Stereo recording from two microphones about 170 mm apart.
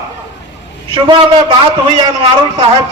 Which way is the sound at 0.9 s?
30° right (ahead or behind).